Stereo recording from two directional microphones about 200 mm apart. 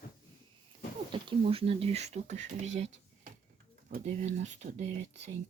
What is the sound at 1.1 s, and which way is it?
Speech, 30° right (ahead or behind).